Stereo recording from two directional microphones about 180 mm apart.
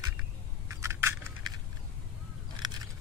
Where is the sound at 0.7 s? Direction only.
15° right (ahead or behind).